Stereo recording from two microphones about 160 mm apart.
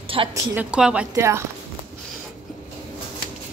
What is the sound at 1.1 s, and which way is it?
Speech, 15° right (ahead or behind).